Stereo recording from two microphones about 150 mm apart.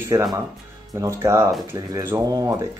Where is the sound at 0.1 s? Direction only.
25° right (ahead or behind).